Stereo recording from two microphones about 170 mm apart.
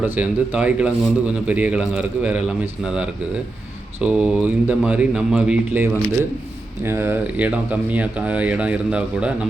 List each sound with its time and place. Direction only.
0.0 s speech: 10° right (ahead or behind)